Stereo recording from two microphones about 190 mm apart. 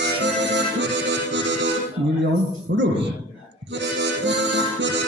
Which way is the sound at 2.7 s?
60° right (ahead or behind).